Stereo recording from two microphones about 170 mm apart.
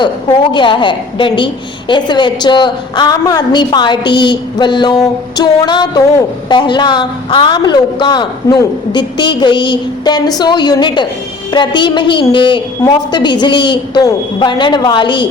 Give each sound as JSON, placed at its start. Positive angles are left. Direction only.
{"t": 0.0, "sound": "a woman's voice", "side_deg": 30}